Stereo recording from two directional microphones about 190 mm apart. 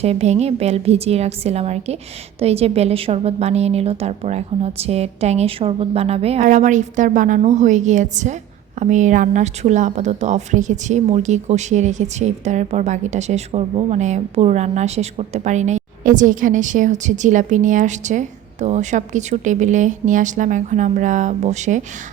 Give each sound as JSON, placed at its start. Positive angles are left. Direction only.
{"t": 0.0, "sound": "speech", "side_deg": -35}